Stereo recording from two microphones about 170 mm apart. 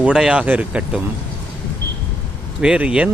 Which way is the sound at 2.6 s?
5° right (ahead or behind).